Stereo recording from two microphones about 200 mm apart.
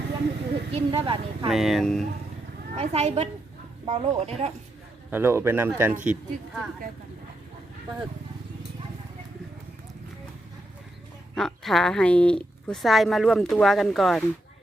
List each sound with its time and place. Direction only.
0.7 s a woman's voice: 25° right (ahead or behind)
1.5 s a woman's voice: centre (ahead or behind)
2.7 s speech: 30° right (ahead or behind)
5.1 s a woman's voice: 10° right (ahead or behind)
11.3 s a woman's voice: centre (ahead or behind)